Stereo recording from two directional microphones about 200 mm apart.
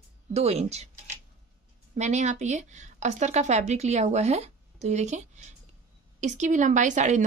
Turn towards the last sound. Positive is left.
turn(degrees=-35)  # may be behind; listen again after turning